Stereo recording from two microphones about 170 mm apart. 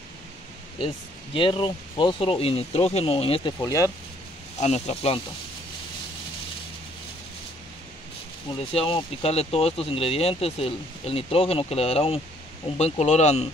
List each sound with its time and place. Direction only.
0.7 s speech: 30° left (ahead or behind)
3.5 s speech: 20° left (ahead or behind)
4.6 s speech: 40° left (ahead or behind)
8.7 s speech: 35° left (ahead or behind)